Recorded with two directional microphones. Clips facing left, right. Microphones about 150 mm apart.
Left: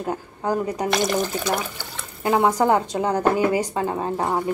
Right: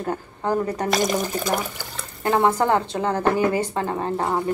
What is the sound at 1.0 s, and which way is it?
Speech, 5° right (ahead or behind).